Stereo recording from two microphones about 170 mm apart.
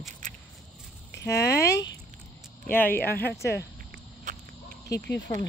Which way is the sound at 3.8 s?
55° right (ahead or behind).